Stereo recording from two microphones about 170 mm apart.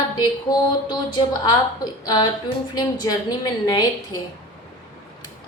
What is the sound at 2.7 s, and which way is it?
Speech, 25° left (ahead or behind).